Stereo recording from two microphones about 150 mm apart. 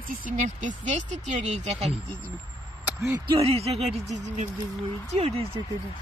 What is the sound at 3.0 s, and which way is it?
Speech, 20° right (ahead or behind).